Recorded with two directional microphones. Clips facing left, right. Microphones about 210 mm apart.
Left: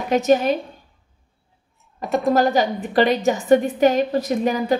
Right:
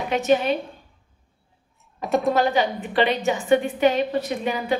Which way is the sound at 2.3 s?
40° left (ahead or behind).